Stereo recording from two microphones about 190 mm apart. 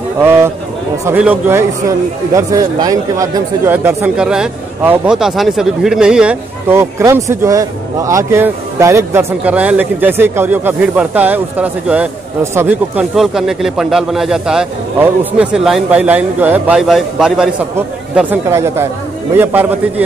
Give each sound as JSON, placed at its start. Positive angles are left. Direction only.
{"t": 0.2, "sound": "a man's voice", "side_deg": -15}